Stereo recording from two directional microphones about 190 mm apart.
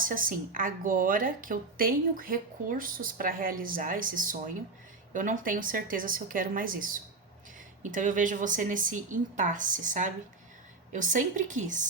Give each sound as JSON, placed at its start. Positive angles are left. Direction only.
{"t": 0.0, "sound": "a woman's voice", "side_deg": -45}